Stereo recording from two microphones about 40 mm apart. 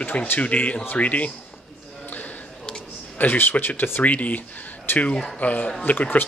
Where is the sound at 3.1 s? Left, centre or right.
Left.